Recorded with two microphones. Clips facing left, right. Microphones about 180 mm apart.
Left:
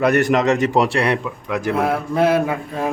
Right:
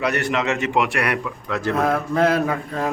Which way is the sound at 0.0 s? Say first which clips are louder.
Left 6 dB; 45° left (ahead or behind).